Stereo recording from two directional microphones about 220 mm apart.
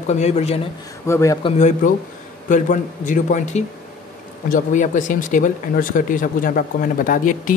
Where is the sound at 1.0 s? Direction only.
15° left (ahead or behind).